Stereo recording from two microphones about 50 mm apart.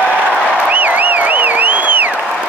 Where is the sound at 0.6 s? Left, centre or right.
Right.